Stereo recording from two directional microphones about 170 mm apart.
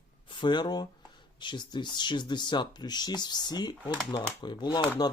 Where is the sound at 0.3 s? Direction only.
30° left (ahead or behind).